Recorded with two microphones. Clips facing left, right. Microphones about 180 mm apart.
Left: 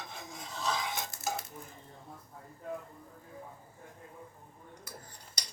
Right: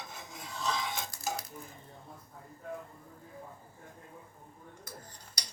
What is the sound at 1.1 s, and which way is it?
Dishes, 20° left (ahead or behind).